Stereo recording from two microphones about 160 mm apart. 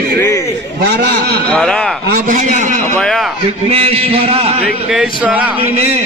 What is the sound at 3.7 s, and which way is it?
Speech, 35° right (ahead or behind).